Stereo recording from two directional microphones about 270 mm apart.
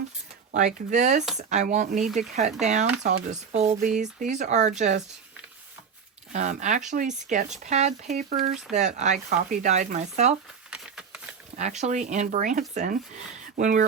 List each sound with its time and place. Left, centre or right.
0.5 s speech: right
6.3 s speech: right
10.7 s a sound: centre
11.5 s speech: right